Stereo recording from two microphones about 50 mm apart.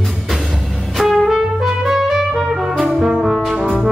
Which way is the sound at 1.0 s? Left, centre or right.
Centre.